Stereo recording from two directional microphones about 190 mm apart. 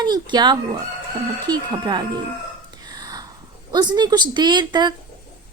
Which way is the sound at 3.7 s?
20° right (ahead or behind).